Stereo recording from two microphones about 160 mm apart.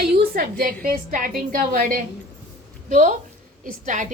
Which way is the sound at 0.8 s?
55° right (ahead or behind).